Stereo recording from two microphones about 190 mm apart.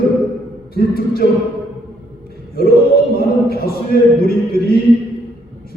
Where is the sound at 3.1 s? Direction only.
55° left (ahead or behind).